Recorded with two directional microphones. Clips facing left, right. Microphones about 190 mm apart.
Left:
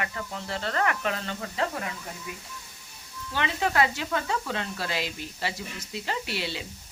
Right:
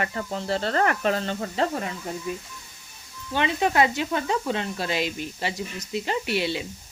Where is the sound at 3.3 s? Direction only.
20° right (ahead or behind).